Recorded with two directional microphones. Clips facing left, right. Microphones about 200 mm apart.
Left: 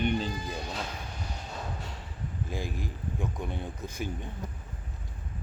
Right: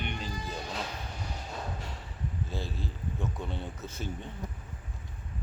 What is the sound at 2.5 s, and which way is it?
Speech, 15° left (ahead or behind).